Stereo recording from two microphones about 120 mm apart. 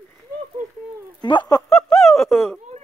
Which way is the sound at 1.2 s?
40° left (ahead or behind).